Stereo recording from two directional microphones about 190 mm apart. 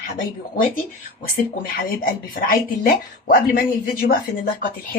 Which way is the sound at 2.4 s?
50° left (ahead or behind).